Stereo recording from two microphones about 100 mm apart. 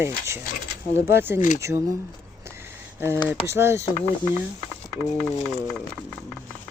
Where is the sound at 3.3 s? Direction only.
25° right (ahead or behind).